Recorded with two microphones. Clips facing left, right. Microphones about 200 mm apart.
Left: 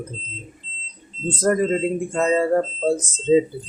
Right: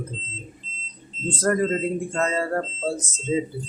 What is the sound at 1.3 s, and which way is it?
Speech, 15° left (ahead or behind).